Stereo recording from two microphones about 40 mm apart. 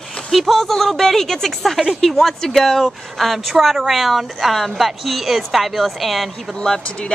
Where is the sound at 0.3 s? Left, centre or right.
Centre.